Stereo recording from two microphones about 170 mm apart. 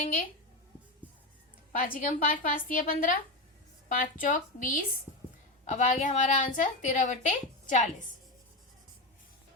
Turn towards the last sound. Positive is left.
turn(degrees=45)  # may be behind; listen again after turning